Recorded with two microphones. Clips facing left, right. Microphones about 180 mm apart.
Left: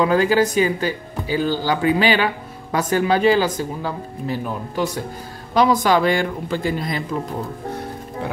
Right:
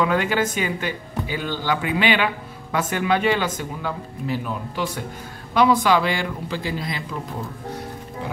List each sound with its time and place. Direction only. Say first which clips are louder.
0.0 s a man's voice: left 5 dB; 35° left (ahead or behind)